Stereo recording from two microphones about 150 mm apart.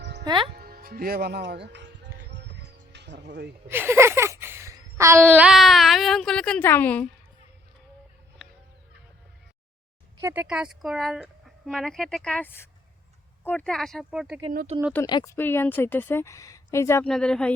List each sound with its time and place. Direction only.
0.3 s speech: 35° right (ahead or behind)
0.5 s speech: 85° right
3.7 s a sound: 15° right (ahead or behind); by 7.1 s 10° left (ahead or behind)
8.4 s music: 5° right (ahead or behind)
10.2 s speech: 20° right (ahead or behind)
10.4 s speech: 5° right (ahead or behind)
14.7 s speech: 40° right (ahead or behind)
15.0 s a woman's voice: 25° left (ahead or behind)
17.1 s speech: 5° left (ahead or behind)